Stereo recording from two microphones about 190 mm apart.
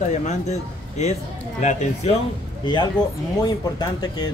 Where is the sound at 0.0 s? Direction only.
40° left (ahead or behind).